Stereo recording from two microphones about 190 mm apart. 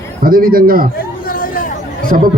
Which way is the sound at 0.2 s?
50° right (ahead or behind).